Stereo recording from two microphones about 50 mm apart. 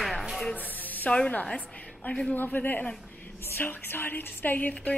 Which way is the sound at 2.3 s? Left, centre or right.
Left.